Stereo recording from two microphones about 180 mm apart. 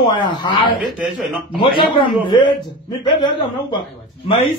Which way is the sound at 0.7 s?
5° right (ahead or behind).